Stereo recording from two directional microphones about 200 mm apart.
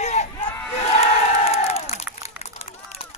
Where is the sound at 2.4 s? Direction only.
35° left (ahead or behind).